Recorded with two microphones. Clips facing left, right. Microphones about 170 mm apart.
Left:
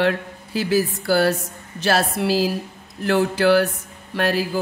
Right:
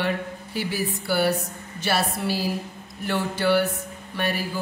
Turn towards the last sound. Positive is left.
turn(degrees=90)